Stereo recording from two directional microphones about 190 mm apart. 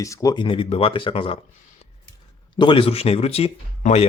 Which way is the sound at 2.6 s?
25° left (ahead or behind).